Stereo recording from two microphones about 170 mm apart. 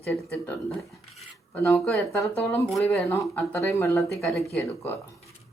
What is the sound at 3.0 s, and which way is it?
Speech, 15° left (ahead or behind).